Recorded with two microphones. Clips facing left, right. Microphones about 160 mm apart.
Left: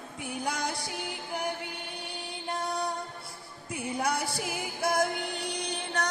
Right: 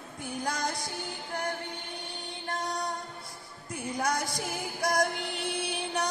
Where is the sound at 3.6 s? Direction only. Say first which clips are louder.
Even; 10° left (ahead or behind).